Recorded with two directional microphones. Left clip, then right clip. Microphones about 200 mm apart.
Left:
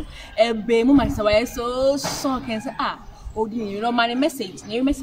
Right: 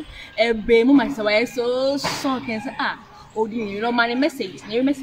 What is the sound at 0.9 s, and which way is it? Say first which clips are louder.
Speech: even; 5° left (ahead or behind).